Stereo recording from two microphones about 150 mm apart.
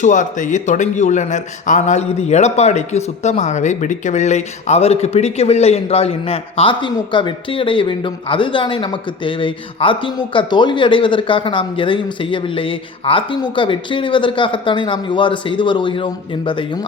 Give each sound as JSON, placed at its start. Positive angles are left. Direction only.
{"t": 0.0, "sound": "speech", "side_deg": 55}